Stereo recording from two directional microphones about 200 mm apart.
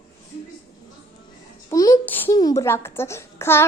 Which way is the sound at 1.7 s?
15° left (ahead or behind).